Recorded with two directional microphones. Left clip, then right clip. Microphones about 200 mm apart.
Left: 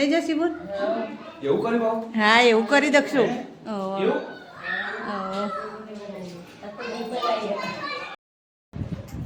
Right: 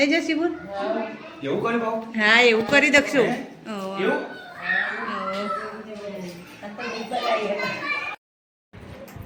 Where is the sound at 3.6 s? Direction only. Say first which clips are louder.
Left 2 dB; 15° left (ahead or behind).